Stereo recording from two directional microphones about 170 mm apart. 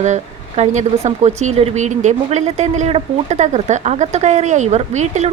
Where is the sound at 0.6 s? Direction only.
40° right (ahead or behind).